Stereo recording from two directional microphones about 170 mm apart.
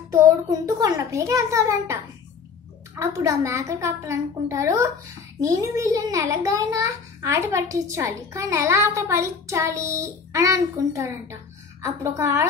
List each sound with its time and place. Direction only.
0.1 s a child's voice: 20° right (ahead or behind)
3.0 s a child's voice: 15° right (ahead or behind)